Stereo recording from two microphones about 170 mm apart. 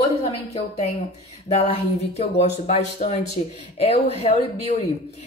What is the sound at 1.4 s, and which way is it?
A woman's voice, 35° left (ahead or behind).